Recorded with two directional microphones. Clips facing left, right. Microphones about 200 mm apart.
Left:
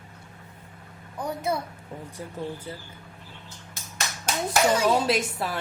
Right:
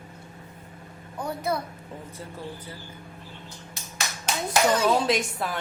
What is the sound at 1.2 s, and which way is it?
Speech, 25° left (ahead or behind).